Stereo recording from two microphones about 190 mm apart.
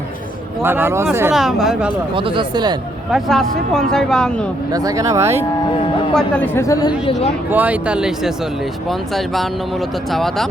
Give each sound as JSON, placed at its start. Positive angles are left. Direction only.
{"t": 0.6, "sound": "speech", "side_deg": -10}
{"t": 1.3, "sound": "speech", "side_deg": 0}
{"t": 2.1, "sound": "speech", "side_deg": -25}
{"t": 3.1, "sound": "speech", "side_deg": 0}
{"t": 4.7, "sound": "speech", "side_deg": -20}
{"t": 6.1, "sound": "a woman's voice", "side_deg": 10}
{"t": 7.5, "sound": "speech", "side_deg": -10}